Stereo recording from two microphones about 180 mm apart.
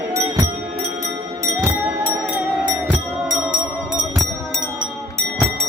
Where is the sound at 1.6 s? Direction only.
10° right (ahead or behind).